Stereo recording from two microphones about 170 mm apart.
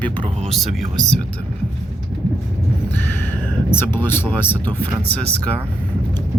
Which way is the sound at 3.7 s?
15° left (ahead or behind).